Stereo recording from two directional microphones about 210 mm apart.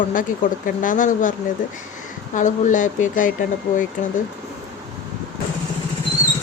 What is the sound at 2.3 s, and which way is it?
Speech, 35° left (ahead or behind).